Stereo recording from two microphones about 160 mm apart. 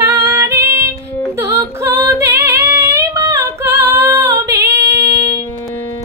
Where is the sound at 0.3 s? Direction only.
15° right (ahead or behind).